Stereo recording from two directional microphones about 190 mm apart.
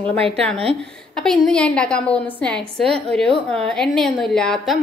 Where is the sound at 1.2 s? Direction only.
Centre (ahead or behind).